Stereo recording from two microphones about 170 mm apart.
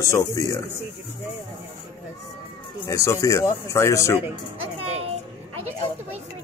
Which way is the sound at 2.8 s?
20° left (ahead or behind).